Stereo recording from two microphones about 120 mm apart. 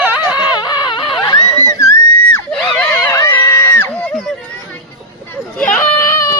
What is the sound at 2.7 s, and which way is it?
Screaming, 15° left (ahead or behind).